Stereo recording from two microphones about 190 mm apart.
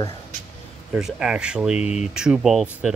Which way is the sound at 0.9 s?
5° right (ahead or behind).